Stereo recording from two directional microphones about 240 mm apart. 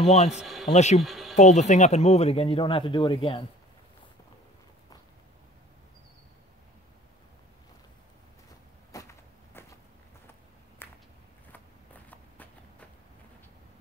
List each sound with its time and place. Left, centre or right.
0.0 s speech: left
0.4 s a sound: centre
0.7 s speech: left
1.0 s speech: centre
1.3 s speech: left
8.9 s walk: centre
10.8 s a sound: centre